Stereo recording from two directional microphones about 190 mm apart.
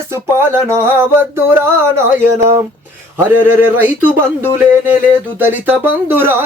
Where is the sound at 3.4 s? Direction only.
10° right (ahead or behind).